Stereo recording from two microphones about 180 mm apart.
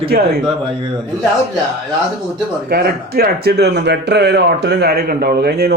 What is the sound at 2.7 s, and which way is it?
Speech, 60° right (ahead or behind).